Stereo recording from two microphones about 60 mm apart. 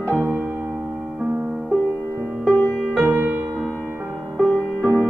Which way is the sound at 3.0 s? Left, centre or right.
Right.